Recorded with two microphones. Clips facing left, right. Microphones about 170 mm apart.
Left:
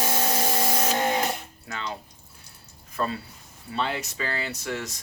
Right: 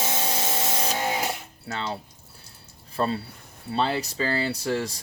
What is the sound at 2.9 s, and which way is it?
Speech, 30° right (ahead or behind).